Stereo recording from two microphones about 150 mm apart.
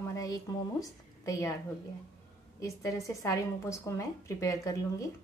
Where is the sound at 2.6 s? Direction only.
20° left (ahead or behind).